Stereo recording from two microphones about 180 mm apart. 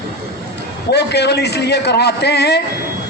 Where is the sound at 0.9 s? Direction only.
65° left (ahead or behind).